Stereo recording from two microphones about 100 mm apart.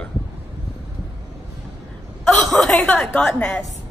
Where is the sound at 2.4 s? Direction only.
5° left (ahead or behind).